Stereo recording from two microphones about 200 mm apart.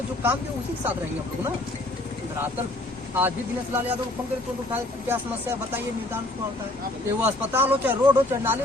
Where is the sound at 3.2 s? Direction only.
10° right (ahead or behind).